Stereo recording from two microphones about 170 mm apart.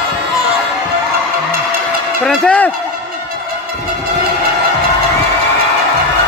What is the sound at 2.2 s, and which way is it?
Speech, 5° left (ahead or behind).